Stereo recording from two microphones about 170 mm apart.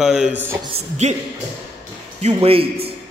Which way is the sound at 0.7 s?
40° right (ahead or behind).